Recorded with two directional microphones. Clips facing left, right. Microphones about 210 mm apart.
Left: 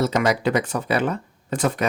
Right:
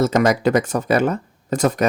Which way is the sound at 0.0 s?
45° right (ahead or behind).